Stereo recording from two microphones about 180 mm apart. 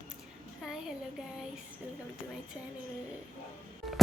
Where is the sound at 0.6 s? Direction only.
5° right (ahead or behind).